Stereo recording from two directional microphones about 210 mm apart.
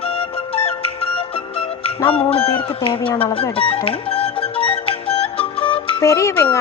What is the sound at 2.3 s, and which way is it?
Speech, 25° left (ahead or behind).